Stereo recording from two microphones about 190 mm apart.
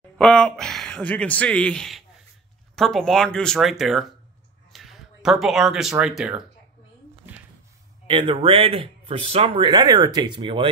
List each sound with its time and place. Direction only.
0.2 s speech: 5° left (ahead or behind)
8.1 s speech: 25° right (ahead or behind)